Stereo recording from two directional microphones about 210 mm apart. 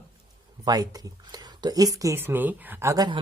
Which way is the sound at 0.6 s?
15° right (ahead or behind).